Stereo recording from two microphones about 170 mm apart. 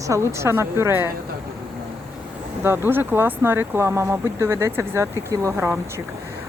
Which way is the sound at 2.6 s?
15° right (ahead or behind).